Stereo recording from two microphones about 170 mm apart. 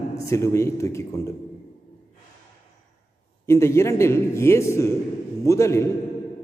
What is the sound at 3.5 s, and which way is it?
A man's voice, 15° left (ahead or behind).